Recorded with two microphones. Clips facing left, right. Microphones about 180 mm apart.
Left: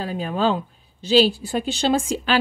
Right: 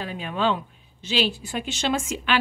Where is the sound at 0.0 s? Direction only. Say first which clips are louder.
Left 4 dB; 40° left (ahead or behind).